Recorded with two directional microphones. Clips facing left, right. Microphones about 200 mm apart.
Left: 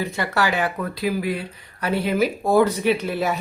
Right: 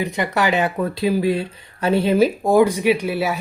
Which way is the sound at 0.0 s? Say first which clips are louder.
Right 3 dB; 15° right (ahead or behind).